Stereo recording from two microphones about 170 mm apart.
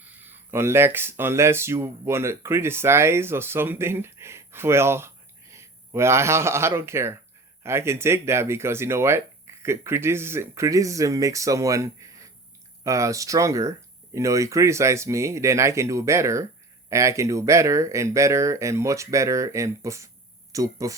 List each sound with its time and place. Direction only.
0.2 s speech: 10° right (ahead or behind)